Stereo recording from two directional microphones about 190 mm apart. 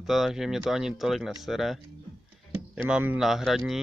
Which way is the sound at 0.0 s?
Centre (ahead or behind).